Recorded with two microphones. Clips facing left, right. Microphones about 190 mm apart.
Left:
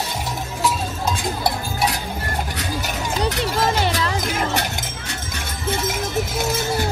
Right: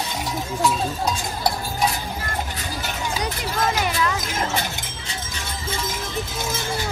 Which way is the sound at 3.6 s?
30° left (ahead or behind).